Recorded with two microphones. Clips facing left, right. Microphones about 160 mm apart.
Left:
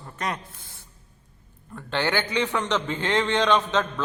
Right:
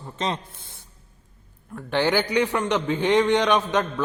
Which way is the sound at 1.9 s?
15° right (ahead or behind).